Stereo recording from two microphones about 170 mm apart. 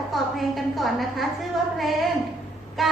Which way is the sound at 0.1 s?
Centre (ahead or behind).